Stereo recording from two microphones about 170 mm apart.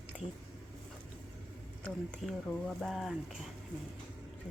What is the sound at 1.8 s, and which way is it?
Speech, 5° left (ahead or behind).